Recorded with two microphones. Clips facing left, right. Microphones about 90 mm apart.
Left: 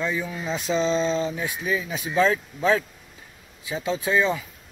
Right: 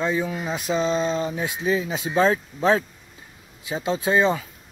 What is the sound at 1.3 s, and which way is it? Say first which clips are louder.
Speech: right 3 dB; 25° right (ahead or behind).